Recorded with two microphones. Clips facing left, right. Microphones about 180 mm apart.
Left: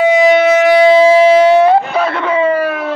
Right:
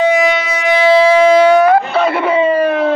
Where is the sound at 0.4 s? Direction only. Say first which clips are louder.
Left 7 dB; 60° left (ahead or behind).